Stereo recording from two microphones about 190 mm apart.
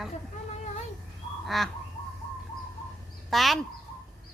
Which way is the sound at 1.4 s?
Centre (ahead or behind).